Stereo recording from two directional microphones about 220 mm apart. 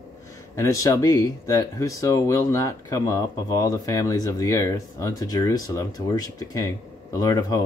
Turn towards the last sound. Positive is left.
turn(degrees=15)  # may be behind; listen again after turning